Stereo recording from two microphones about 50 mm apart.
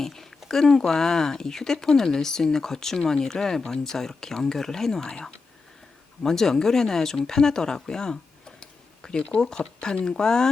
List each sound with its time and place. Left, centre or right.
0.0 s speech: centre